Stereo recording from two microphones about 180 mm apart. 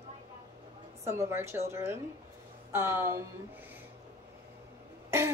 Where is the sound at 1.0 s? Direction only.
15° right (ahead or behind).